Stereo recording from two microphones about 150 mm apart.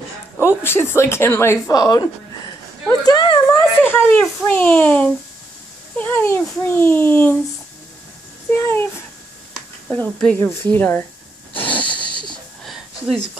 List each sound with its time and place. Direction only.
0.4 s a woman's voice: 15° left (ahead or behind)
3.8 s a child's voice: 10° left (ahead or behind)
8.5 s a child's voice: 15° left (ahead or behind)
9.8 s a child's voice: 10° left (ahead or behind)
11.9 s wheeze: 30° left (ahead or behind)
12.6 s a sound: centre (ahead or behind)